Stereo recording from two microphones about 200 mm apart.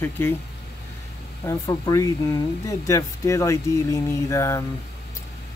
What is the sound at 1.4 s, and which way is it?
Speech, 15° left (ahead or behind).